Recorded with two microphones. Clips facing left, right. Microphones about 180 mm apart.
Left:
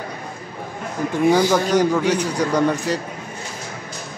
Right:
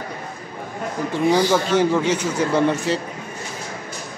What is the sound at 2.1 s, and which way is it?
Speech, 15° left (ahead or behind).